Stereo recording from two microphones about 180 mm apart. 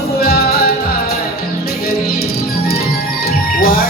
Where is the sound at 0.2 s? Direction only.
60° left (ahead or behind).